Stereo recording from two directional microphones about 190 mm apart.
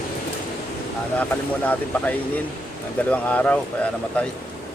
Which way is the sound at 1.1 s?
10° left (ahead or behind).